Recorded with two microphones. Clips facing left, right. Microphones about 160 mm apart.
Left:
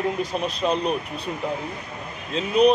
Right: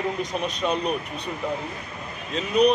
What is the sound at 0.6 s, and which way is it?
Speech, 35° left (ahead or behind).